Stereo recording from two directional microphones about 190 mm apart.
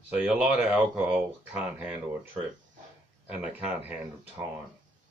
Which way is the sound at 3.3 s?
10° right (ahead or behind).